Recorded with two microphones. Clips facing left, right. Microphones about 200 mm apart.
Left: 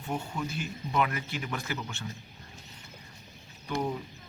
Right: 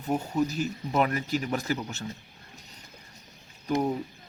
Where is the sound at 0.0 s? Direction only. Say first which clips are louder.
Right 7 dB; 40° right (ahead or behind).